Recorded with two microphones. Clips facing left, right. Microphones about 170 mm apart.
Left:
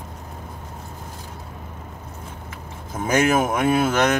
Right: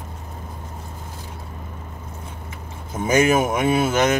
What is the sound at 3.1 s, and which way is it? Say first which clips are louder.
Speech: right 1 dB; 20° right (ahead or behind).